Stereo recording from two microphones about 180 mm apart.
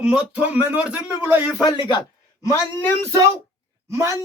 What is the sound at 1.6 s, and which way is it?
A man's voice, 25° left (ahead or behind).